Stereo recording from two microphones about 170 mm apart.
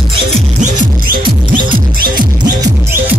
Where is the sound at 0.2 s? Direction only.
45° right (ahead or behind).